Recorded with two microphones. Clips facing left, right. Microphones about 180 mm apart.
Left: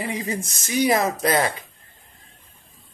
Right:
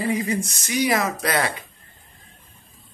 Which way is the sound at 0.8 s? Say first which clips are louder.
Left 2 dB; 30° left (ahead or behind).